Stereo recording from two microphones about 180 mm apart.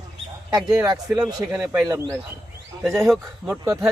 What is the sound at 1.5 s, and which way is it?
Speech, 15° right (ahead or behind).